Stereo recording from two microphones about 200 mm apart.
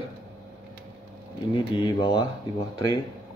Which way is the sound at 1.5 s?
25° left (ahead or behind).